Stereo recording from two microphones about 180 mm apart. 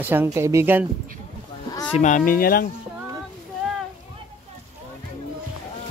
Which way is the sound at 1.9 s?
45° left (ahead or behind).